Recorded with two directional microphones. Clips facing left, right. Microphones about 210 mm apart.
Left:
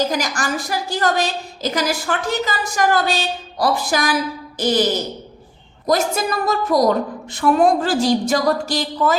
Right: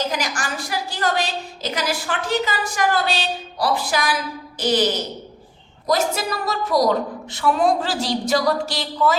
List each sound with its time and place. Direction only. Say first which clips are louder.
0.1 s a woman's voice: left 4 dB; 45° left (ahead or behind)
5.9 s a woman's voice: left 2 dB; 50° left (ahead or behind)